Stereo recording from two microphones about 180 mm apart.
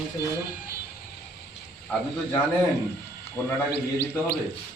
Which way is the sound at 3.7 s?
65° left (ahead or behind).